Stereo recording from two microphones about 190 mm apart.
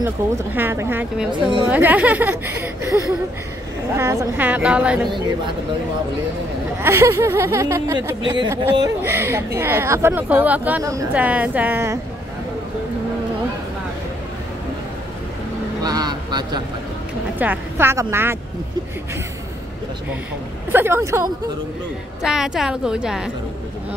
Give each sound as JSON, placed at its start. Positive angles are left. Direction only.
{"t": 0.0, "sound": "speech", "side_deg": -10}
{"t": 1.3, "sound": "a woman's voice", "side_deg": -25}
{"t": 1.7, "sound": "speech", "side_deg": -10}
{"t": 6.8, "sound": "speech", "side_deg": -15}
{"t": 15.8, "sound": "a sound", "side_deg": -20}
{"t": 17.4, "sound": "speech", "side_deg": -10}
{"t": 20.7, "sound": "speech", "side_deg": -10}
{"t": 22.2, "sound": "a woman's voice", "side_deg": -5}